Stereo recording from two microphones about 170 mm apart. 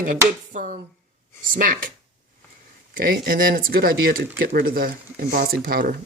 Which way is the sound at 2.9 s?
60° right (ahead or behind).